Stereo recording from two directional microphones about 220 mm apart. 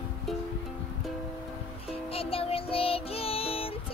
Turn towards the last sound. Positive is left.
turn(degrees=25)  # may be behind; listen again after turning